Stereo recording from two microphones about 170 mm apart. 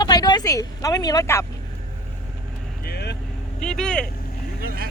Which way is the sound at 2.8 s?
75° left (ahead or behind).